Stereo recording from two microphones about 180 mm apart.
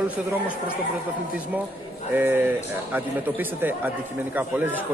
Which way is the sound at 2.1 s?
10° right (ahead or behind).